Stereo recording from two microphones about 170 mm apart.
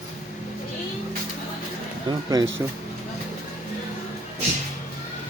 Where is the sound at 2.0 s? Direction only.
25° right (ahead or behind).